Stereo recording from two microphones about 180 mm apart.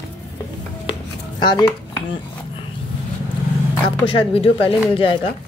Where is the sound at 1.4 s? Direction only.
25° left (ahead or behind).